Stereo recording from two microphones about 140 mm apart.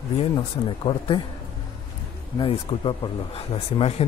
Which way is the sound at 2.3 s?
40° left (ahead or behind).